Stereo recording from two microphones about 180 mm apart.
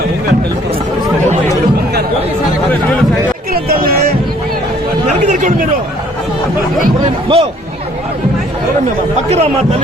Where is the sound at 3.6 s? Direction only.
55° right (ahead or behind).